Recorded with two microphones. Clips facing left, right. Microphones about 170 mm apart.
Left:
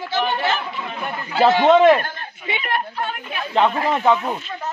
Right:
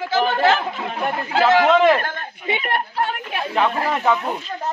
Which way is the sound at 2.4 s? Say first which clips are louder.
Right 1 dB; 45° right (ahead or behind).